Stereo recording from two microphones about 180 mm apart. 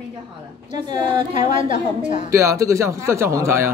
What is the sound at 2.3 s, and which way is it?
A woman's voice, 15° right (ahead or behind).